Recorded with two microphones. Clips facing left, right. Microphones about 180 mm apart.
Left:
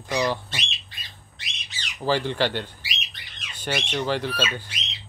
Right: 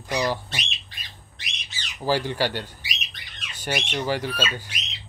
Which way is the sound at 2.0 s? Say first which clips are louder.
Even; 10° right (ahead or behind).